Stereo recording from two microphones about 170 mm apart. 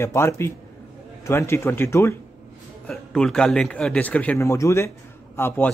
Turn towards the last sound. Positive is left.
turn(degrees=15)  # may be behind; listen again after turning